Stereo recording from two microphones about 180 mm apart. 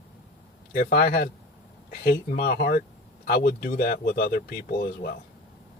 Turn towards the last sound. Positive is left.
turn(degrees=55)  # may be behind; listen again after turning